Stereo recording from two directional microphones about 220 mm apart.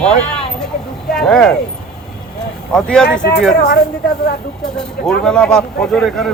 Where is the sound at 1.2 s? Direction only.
5° left (ahead or behind).